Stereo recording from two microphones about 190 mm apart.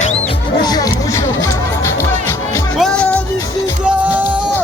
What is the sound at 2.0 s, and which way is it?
Music, 15° left (ahead or behind).